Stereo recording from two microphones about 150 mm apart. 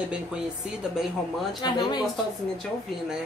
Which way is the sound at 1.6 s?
30° left (ahead or behind).